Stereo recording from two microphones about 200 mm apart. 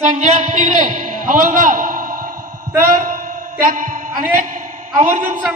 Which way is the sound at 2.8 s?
45° right (ahead or behind).